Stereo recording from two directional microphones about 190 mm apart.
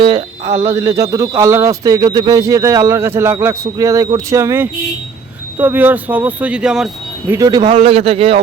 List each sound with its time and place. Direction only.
0.0 s speech: 30° right (ahead or behind)
0.6 s speech: 15° right (ahead or behind)
7.3 s a man's voice: 20° right (ahead or behind)